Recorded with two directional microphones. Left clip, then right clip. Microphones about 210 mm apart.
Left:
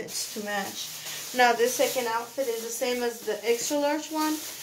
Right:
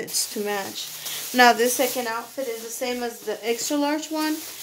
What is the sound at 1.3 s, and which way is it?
Speech, 50° right (ahead or behind).